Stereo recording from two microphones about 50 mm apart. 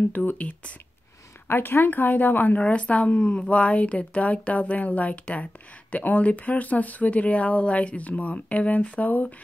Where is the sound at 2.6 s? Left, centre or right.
Left.